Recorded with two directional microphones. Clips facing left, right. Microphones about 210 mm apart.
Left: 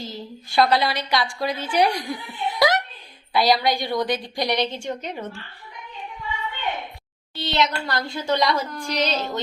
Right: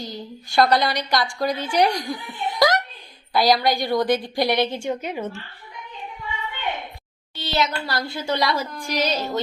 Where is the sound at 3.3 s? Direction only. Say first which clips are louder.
Right 1 dB; centre (ahead or behind).